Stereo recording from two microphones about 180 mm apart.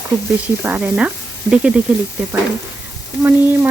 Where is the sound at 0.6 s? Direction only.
10° right (ahead or behind).